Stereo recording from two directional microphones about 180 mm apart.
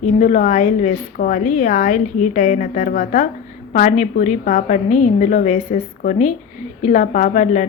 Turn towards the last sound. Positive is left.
turn(degrees=40)  # may be behind; listen again after turning